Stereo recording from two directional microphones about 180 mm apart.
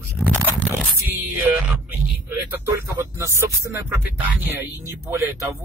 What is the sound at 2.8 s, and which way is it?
Speech, 10° right (ahead or behind).